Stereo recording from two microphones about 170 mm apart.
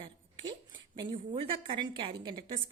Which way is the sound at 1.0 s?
30° right (ahead or behind).